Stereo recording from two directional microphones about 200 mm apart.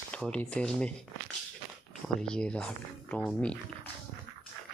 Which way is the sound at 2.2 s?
5° left (ahead or behind).